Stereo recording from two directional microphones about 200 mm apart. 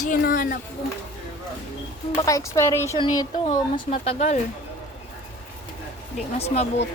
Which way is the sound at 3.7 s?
30° left (ahead or behind).